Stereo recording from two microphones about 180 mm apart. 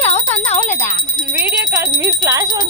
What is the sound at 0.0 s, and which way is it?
Jingle bell, 40° left (ahead or behind).